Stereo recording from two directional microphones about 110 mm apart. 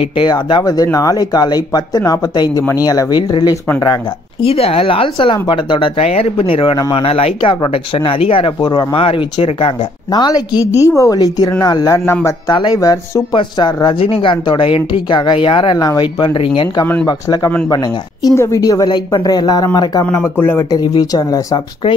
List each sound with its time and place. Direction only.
0.2 s speech: 45° left (ahead or behind)
4.4 s speech: 60° left (ahead or behind)
5.9 s speech: 65° left (ahead or behind)
10.1 s a woman's voice: 40° left (ahead or behind)
11.1 s speech: 40° left (ahead or behind)
12.5 s speech: 40° left (ahead or behind)
14.0 s speech: 50° left (ahead or behind); by 20.1 s 35° left (ahead or behind)
20.1 s a woman's voice: 20° left (ahead or behind)